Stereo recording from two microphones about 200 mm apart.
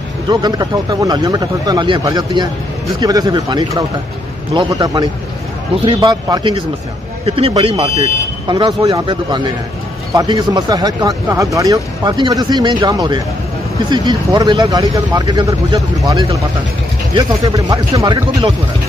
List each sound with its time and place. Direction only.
0.3 s speech: 20° right (ahead or behind)